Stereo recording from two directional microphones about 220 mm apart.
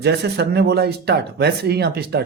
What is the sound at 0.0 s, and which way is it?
Speech, 50° right (ahead or behind).